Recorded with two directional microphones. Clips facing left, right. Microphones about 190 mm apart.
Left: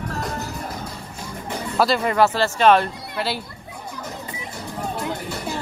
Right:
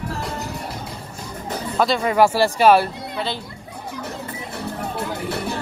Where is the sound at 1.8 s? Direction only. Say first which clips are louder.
Even; centre (ahead or behind).